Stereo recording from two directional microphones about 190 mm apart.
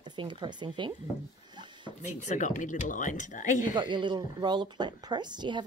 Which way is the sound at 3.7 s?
25° right (ahead or behind).